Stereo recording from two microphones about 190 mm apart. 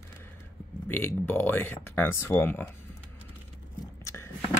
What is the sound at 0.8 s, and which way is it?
Speech, 10° left (ahead or behind).